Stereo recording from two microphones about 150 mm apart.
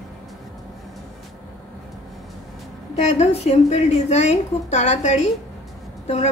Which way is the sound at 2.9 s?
50° left (ahead or behind).